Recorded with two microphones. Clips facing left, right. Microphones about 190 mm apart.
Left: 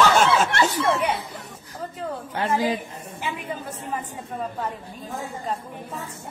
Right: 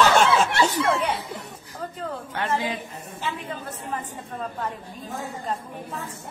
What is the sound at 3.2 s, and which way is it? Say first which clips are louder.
Speech: left 1 dB; 15° left (ahead or behind).